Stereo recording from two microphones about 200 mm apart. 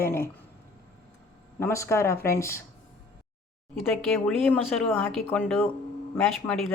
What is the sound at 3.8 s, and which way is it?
Speech, 5° left (ahead or behind).